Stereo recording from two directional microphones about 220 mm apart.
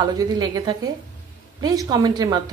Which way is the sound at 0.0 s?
15° right (ahead or behind).